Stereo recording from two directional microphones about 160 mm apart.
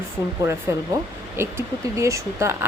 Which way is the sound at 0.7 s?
15° right (ahead or behind).